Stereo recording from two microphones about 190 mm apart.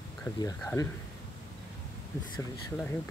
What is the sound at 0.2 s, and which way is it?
Speech, 20° left (ahead or behind).